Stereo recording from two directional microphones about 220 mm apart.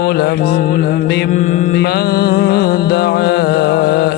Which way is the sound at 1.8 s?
45° left (ahead or behind).